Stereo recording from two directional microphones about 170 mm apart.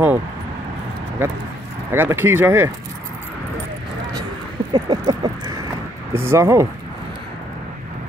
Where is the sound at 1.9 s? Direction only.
10° right (ahead or behind).